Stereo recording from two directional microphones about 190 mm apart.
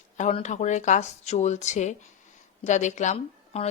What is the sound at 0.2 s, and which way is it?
Speech, 35° left (ahead or behind).